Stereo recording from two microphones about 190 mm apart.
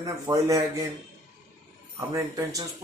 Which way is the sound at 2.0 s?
15° right (ahead or behind).